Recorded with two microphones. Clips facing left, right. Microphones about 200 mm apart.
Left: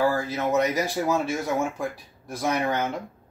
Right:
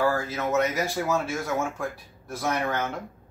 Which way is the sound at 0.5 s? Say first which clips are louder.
Left 1 dB; 15° left (ahead or behind).